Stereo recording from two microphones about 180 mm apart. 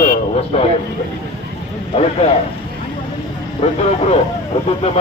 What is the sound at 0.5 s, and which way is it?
Speech, 35° left (ahead or behind).